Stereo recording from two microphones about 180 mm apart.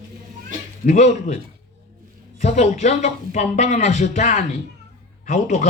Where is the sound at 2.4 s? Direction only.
40° left (ahead or behind).